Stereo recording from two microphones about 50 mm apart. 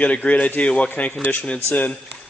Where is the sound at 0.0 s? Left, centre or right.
Left.